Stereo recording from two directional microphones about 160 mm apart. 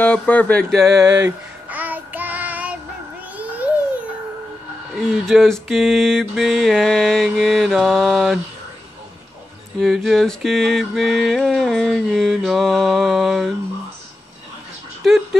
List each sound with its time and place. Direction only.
0.0 s speech: 10° left (ahead or behind)
0.7 s mantra: centre (ahead or behind)
0.9 s speech: 20° right (ahead or behind)
1.7 s child singing: 10° right (ahead or behind)
4.9 s mantra: centre (ahead or behind)
9.8 s mantra: centre (ahead or behind)